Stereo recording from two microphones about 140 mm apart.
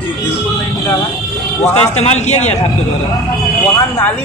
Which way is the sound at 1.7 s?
50° left (ahead or behind).